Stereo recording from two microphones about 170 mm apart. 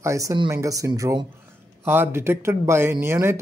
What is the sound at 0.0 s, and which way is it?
Speech, 20° right (ahead or behind).